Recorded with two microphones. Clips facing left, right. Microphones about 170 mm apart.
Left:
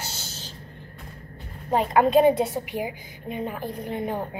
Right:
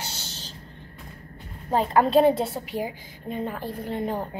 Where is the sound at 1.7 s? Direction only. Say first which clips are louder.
Left 1 dB; 10° left (ahead or behind).